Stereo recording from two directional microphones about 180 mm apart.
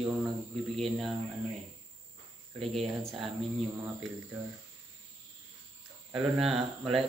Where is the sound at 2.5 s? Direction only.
Centre (ahead or behind).